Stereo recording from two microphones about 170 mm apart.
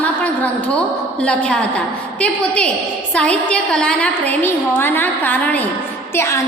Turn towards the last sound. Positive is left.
turn(degrees=15)  # may be behind; listen again after turning